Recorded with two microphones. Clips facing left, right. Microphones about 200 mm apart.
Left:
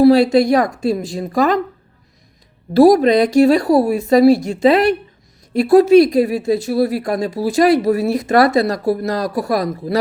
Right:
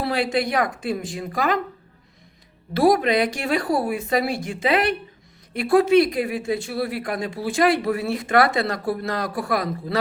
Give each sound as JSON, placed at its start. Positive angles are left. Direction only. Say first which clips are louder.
{"t": 0.1, "sound": "a woman's voice", "louder": "left 11 dB", "side_deg": 40}
{"t": 2.7, "sound": "a woman's voice", "louder": "left 8 dB", "side_deg": 40}